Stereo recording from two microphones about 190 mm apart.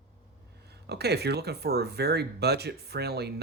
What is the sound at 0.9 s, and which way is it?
Speech, 60° right (ahead or behind).